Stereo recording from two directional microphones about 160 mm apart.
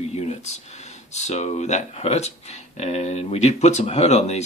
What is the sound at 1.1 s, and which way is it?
Speech, 45° left (ahead or behind).